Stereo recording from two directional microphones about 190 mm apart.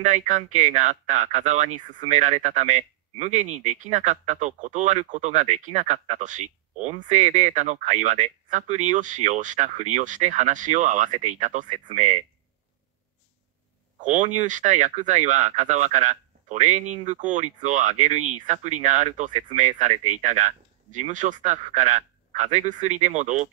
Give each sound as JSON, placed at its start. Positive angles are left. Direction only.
{"t": 0.0, "sound": "speech", "side_deg": -40}
{"t": 13.9, "sound": "speech", "side_deg": -40}